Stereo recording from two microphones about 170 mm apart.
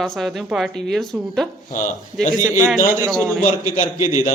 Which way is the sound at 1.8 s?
50° left (ahead or behind).